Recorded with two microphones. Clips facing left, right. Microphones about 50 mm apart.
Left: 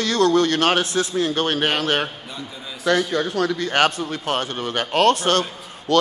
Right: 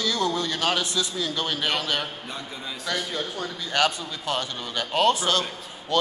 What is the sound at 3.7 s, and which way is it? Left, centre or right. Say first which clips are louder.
A man's voice: even; left.